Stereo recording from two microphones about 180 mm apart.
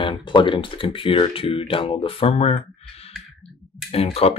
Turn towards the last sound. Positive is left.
turn(degrees=35)  # may be behind; listen again after turning